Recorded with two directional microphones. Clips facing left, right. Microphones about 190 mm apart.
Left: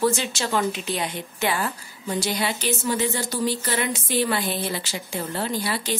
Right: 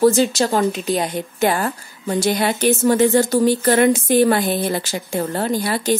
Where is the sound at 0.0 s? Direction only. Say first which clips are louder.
Right 9 dB; 40° right (ahead or behind).